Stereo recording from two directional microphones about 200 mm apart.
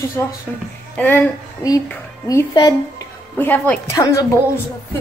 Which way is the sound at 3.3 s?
10° left (ahead or behind).